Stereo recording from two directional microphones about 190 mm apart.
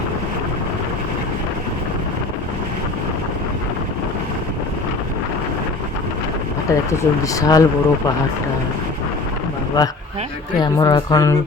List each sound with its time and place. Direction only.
6.7 s speech: 15° left (ahead or behind)
9.8 s speech: 20° left (ahead or behind)